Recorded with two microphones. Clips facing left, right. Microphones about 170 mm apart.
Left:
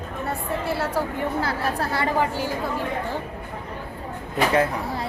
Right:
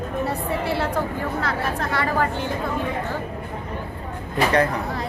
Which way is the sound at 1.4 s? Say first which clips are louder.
Even; 30° left (ahead or behind).